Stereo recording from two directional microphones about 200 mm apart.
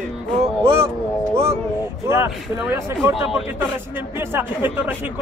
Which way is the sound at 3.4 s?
10° right (ahead or behind).